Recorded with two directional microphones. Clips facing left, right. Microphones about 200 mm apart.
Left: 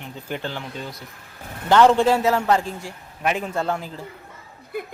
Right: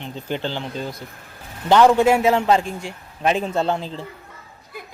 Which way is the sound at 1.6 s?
15° right (ahead or behind).